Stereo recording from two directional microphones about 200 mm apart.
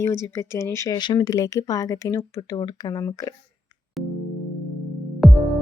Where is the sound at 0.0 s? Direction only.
15° left (ahead or behind).